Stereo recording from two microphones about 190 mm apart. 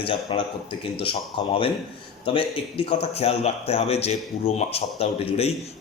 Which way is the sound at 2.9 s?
30° left (ahead or behind).